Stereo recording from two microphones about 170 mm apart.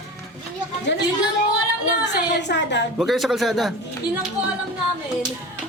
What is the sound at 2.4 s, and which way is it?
Speech, 90° left.